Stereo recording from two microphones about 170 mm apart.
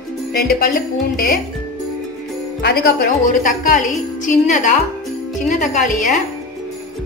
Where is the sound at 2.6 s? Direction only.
70° left (ahead or behind); by 5.9 s 45° left (ahead or behind).